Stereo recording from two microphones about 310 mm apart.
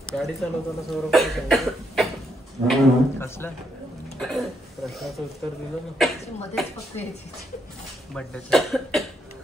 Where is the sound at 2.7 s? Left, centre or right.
Centre.